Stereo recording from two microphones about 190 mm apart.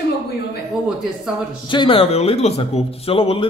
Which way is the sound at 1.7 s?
25° left (ahead or behind).